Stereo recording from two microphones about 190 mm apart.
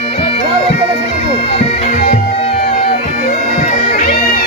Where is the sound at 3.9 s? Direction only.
50° left (ahead or behind).